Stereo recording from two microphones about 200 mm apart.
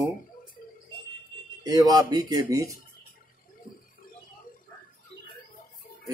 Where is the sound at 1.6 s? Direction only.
20° right (ahead or behind).